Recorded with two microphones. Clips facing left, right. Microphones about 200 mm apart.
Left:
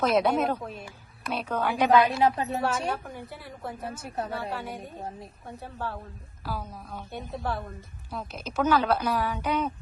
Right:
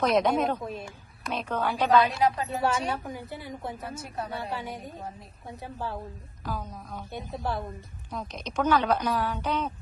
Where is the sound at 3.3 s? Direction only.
Centre (ahead or behind).